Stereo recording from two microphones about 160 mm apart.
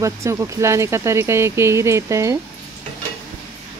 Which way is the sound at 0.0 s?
20° right (ahead or behind).